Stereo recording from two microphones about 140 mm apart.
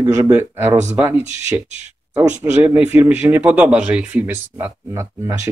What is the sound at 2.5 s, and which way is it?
Speech, 10° right (ahead or behind).